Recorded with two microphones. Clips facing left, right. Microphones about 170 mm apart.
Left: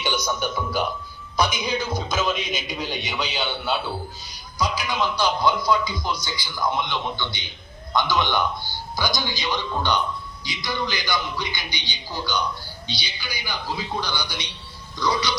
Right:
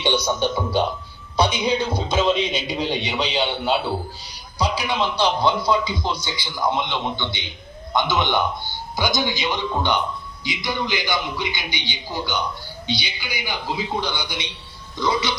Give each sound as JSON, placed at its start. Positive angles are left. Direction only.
{"t": 0.0, "sound": "a man's voice", "side_deg": -30}